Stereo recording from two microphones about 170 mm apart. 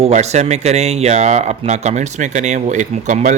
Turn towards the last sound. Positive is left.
turn(degrees=-45)  # may be behind; listen again after turning